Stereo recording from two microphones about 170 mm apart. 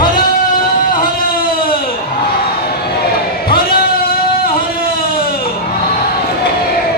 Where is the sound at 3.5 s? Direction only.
60° left (ahead or behind).